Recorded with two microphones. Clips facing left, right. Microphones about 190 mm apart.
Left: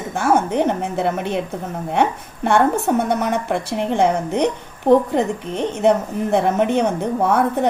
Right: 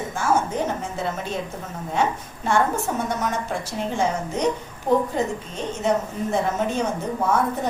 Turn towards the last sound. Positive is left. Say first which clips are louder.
# left 5 dB
turn(degrees=65)  # may be behind; listen again after turning